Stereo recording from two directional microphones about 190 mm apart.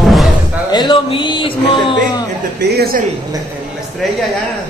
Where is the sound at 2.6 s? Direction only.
55° right (ahead or behind).